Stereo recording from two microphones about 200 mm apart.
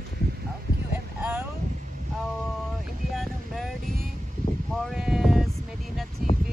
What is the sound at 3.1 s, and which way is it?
Boat, centre (ahead or behind).